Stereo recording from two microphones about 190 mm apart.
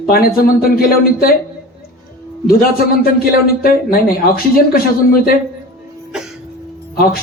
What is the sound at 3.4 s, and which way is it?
A man's voice, 50° left (ahead or behind).